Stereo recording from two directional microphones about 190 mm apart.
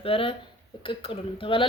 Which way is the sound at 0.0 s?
30° left (ahead or behind).